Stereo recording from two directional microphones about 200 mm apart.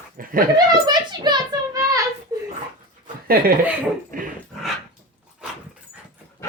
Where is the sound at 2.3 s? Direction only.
20° right (ahead or behind).